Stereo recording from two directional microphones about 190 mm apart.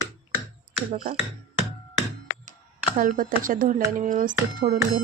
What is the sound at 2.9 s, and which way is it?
A woman's voice, 45° right (ahead or behind).